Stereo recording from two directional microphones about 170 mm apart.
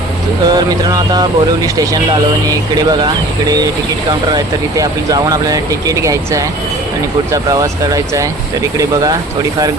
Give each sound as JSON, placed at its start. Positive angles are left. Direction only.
{"t": 0.4, "sound": "speech", "side_deg": -25}
{"t": 4.3, "sound": "speech", "side_deg": -25}
{"t": 7.5, "sound": "speech", "side_deg": -20}